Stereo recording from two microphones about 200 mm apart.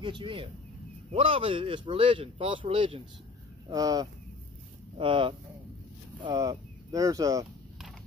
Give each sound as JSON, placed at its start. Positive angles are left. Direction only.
{"t": 0.0, "sound": "speech", "side_deg": -25}